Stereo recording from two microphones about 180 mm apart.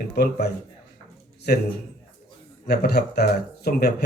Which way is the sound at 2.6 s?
60° left (ahead or behind).